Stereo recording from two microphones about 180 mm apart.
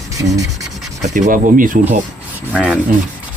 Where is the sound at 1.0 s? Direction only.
45° right (ahead or behind).